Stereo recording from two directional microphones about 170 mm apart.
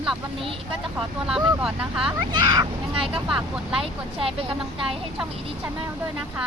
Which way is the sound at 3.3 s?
5° right (ahead or behind).